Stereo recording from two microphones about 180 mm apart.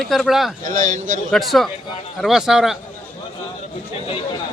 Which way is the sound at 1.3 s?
Centre (ahead or behind).